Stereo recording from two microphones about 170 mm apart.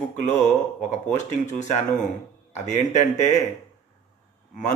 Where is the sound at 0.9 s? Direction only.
45° left (ahead or behind).